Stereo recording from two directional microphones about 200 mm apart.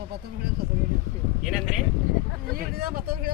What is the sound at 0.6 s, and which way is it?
Speech, 50° right (ahead or behind).